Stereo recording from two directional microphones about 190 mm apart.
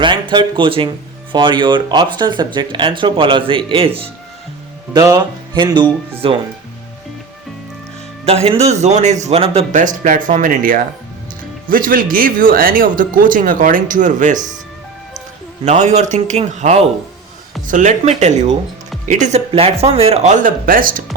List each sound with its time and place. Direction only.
0.0 s speech: 25° right (ahead or behind)
8.2 s speech: 30° right (ahead or behind)
15.6 s speech: 40° right (ahead or behind)